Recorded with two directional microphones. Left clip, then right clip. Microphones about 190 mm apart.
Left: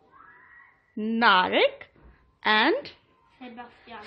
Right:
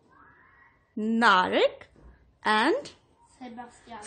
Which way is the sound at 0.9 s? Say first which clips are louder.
Left 1 dB; 10° right (ahead or behind).